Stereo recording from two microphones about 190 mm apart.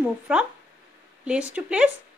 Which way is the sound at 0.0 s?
5° right (ahead or behind).